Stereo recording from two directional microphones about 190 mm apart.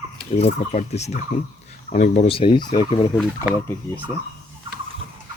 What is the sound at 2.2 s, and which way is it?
Turkey, 30° left (ahead or behind).